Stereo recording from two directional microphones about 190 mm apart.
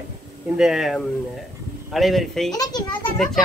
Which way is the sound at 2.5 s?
20° left (ahead or behind).